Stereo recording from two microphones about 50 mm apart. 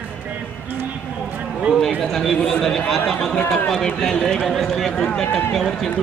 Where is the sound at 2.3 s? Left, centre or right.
Centre.